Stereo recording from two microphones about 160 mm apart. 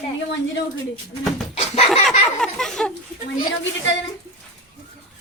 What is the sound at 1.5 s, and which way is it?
Laughter, 40° left (ahead or behind).